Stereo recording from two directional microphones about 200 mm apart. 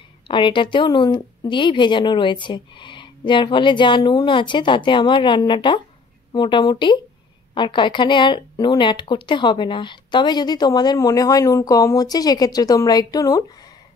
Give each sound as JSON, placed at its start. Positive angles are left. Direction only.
{"t": 0.3, "sound": "speech", "side_deg": 25}